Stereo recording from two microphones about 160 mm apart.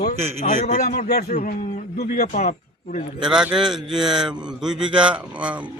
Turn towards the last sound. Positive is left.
turn(degrees=-5)  # may be behind; listen again after turning